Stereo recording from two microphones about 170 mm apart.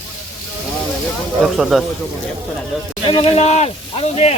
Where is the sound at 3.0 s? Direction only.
30° left (ahead or behind).